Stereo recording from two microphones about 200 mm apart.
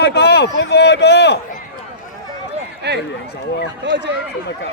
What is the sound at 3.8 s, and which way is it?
Speech, 60° right (ahead or behind).